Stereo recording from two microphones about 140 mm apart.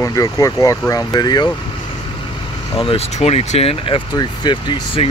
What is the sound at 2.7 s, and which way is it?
Speech, 45° left (ahead or behind).